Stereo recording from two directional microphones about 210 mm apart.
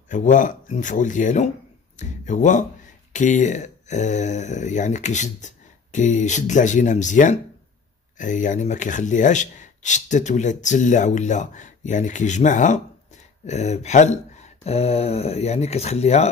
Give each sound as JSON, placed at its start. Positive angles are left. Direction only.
{"t": 0.1, "sound": "speech", "side_deg": 35}